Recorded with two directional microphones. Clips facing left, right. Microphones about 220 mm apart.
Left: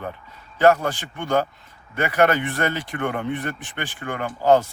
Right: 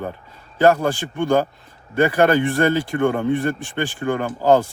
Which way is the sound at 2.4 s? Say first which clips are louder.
Right 7 dB; 45° right (ahead or behind).